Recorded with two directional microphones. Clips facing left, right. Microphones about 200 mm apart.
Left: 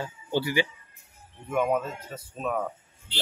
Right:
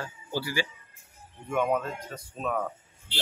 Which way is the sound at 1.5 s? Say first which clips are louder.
Left 1 dB; 5° left (ahead or behind).